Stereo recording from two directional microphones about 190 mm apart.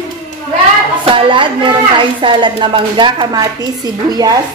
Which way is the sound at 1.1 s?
25° right (ahead or behind).